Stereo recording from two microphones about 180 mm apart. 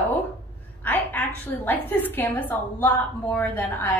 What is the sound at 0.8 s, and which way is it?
A woman's voice, 10° left (ahead or behind).